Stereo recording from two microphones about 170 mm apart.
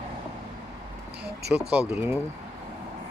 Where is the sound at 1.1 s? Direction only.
65° right (ahead or behind).